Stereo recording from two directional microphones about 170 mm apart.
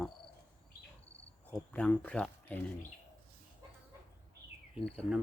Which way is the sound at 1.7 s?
5° left (ahead or behind).